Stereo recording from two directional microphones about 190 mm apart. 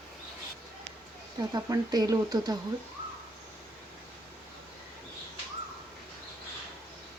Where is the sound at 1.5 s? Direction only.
20° right (ahead or behind).